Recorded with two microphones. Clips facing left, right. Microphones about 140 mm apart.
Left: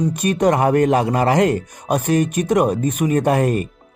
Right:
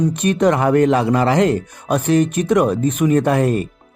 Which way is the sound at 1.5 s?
15° left (ahead or behind).